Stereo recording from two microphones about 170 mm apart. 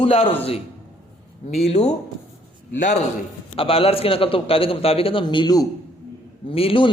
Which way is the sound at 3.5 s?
35° left (ahead or behind).